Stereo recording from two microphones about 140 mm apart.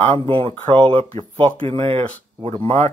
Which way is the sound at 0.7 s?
40° right (ahead or behind).